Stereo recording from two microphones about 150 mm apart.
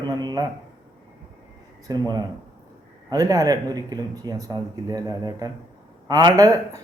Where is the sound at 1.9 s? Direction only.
25° right (ahead or behind).